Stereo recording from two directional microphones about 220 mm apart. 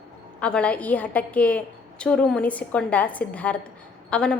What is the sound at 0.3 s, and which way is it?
A woman's voice, 5° left (ahead or behind).